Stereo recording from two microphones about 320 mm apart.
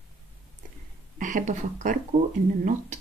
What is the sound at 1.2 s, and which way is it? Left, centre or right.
Speech, right.